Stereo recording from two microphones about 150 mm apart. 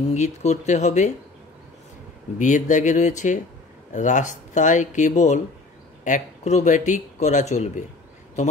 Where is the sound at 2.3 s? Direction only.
55° left (ahead or behind).